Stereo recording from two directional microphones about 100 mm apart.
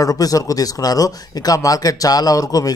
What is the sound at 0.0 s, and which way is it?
A man's voice, 35° left (ahead or behind).